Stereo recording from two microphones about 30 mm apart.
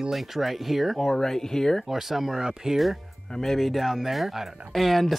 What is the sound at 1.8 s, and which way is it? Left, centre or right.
Speech, centre.